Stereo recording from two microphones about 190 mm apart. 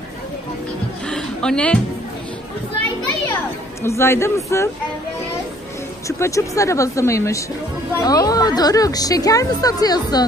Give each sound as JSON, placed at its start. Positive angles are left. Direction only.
{"t": 1.0, "sound": "a sound", "side_deg": 5}
{"t": 3.8, "sound": "speech", "side_deg": 15}
{"t": 6.0, "sound": "a woman's voice", "side_deg": 15}